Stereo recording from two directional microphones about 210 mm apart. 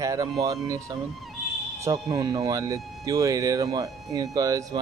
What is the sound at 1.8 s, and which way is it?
A man's voice, 15° right (ahead or behind).